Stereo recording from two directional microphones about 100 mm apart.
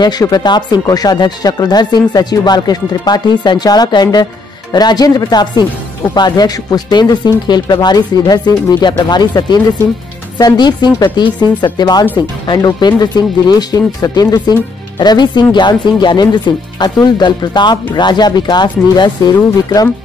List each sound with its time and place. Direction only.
0.0 s speech: 45° left (ahead or behind)